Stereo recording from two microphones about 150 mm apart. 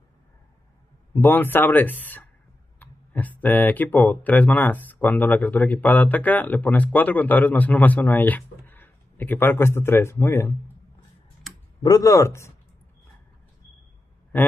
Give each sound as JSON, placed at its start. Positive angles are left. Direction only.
{"t": 1.2, "sound": "speech", "side_deg": 15}
{"t": 11.8, "sound": "speech", "side_deg": 25}